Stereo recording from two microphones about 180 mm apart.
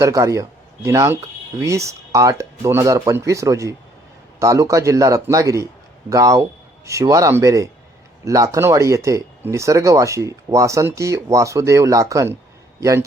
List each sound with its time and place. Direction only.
0.0 s speech: 15° right (ahead or behind)